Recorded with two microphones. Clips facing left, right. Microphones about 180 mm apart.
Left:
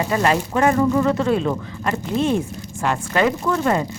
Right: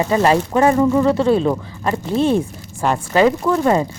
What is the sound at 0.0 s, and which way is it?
Speech, 30° right (ahead or behind).